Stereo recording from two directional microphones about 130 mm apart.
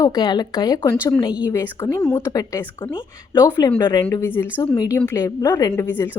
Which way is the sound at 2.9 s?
35° left (ahead or behind).